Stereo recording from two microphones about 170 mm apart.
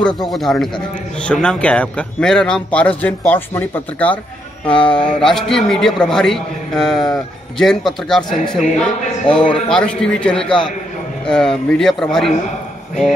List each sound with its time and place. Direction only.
0.2 s a man's voice: centre (ahead or behind)